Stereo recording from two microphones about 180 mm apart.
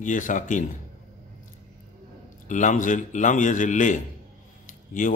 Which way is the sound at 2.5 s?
45° left (ahead or behind).